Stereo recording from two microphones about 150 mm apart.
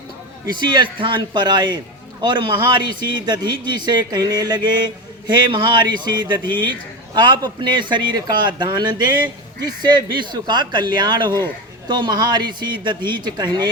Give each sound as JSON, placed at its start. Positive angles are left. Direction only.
{"t": 0.4, "sound": "a man's voice", "side_deg": -30}